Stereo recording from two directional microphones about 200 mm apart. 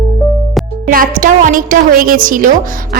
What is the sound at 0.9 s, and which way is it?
A woman's voice, 45° right (ahead or behind).